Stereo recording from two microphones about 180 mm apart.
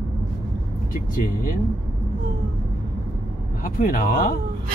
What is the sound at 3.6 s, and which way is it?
Speech, 50° left (ahead or behind).